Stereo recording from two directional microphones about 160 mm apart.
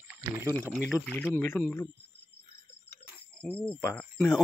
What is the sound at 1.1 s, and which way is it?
Speech, 10° left (ahead or behind).